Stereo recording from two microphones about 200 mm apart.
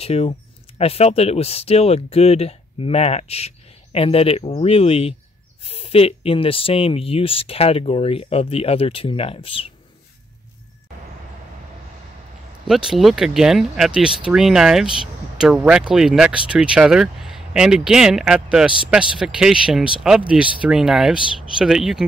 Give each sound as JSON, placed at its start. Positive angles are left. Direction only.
{"t": 0.0, "sound": "speech", "side_deg": 30}
{"t": 12.6, "sound": "speech", "side_deg": 0}